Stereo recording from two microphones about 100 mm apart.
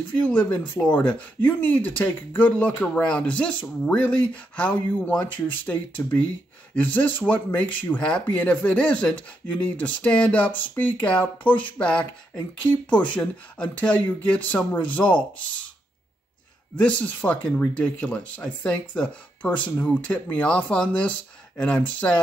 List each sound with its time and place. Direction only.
0.2 s speech: 10° left (ahead or behind)
16.7 s speech: 15° left (ahead or behind)